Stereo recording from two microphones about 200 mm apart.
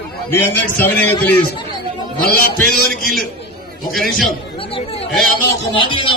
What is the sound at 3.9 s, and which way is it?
Speech, centre (ahead or behind).